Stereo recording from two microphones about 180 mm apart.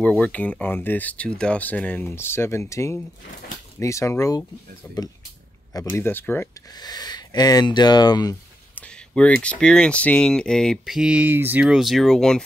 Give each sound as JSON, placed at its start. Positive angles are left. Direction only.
{"t": 0.0, "sound": "speech", "side_deg": 5}
{"t": 6.7, "sound": "speech", "side_deg": 20}
{"t": 8.7, "sound": "speech", "side_deg": 5}